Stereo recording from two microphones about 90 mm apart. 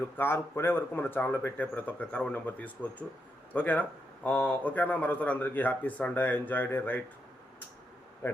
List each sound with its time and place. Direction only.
0.2 s a man's voice: 25° left (ahead or behind)
8.2 s a man's voice: 20° left (ahead or behind)